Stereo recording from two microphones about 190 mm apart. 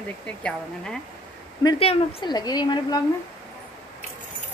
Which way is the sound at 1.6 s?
25° left (ahead or behind).